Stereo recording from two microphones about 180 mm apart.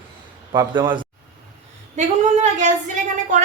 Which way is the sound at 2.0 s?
40° right (ahead or behind).